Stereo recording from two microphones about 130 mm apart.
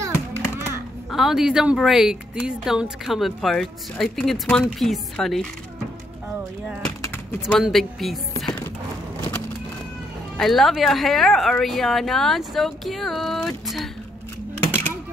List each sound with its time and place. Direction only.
0.0 s a sound: 20° right (ahead or behind)
1.1 s a woman's voice: 5° right (ahead or behind)
7.5 s a woman's voice: centre (ahead or behind)
10.3 s a woman's voice: centre (ahead or behind)